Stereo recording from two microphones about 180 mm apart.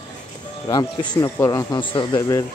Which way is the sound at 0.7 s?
20° left (ahead or behind).